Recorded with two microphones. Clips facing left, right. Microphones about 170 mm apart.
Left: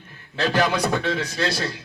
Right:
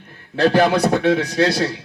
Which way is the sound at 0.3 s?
60° right (ahead or behind).